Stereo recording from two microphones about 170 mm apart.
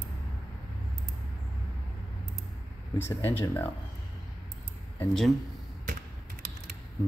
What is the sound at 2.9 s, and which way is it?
Speech, 15° left (ahead or behind).